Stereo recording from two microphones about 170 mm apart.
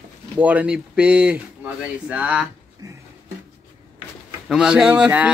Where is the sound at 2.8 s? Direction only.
20° right (ahead or behind).